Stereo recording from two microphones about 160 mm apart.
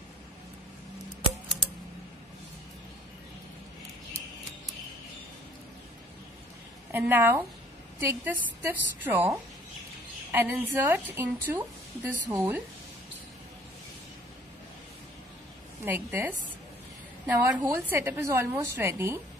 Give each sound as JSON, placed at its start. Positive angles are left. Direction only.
{"t": 6.9, "sound": "a woman's voice", "side_deg": -15}
{"t": 15.8, "sound": "a woman's voice", "side_deg": -15}
{"t": 17.3, "sound": "a woman's voice", "side_deg": -15}